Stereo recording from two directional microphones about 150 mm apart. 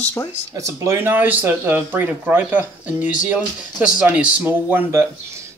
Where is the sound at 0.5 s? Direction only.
20° right (ahead or behind).